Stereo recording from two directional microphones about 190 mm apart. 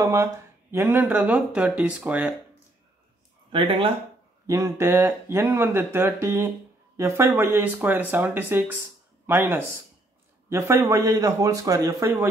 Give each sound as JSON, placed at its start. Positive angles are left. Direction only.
{"t": 0.0, "sound": "speech", "side_deg": -15}
{"t": 3.5, "sound": "speech", "side_deg": -30}
{"t": 4.5, "sound": "speech", "side_deg": -15}